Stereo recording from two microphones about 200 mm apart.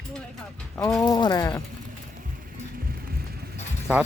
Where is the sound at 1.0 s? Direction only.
20° left (ahead or behind).